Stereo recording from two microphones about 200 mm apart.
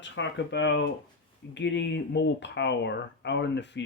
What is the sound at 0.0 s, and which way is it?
Speech, 65° left (ahead or behind).